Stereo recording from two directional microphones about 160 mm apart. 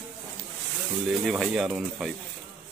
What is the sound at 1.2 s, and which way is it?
Speech, centre (ahead or behind).